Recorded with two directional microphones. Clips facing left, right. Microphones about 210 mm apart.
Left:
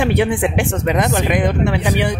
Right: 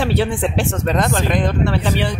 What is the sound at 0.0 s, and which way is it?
Speech, 15° left (ahead or behind).